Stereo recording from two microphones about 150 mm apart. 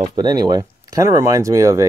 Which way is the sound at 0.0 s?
30° right (ahead or behind).